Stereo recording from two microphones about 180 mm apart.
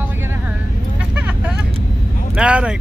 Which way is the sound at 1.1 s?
5° right (ahead or behind).